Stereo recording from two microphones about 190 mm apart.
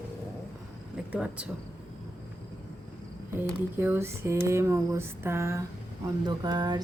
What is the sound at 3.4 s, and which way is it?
Speech, 10° right (ahead or behind).